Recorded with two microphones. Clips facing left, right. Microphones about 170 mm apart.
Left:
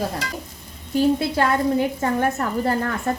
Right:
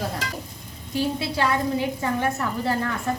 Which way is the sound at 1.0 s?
50° left (ahead or behind).